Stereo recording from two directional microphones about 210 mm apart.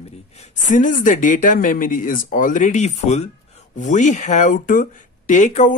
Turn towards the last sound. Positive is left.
turn(degrees=35)  # may be behind; listen again after turning